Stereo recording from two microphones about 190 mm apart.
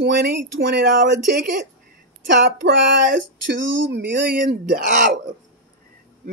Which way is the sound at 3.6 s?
80° right.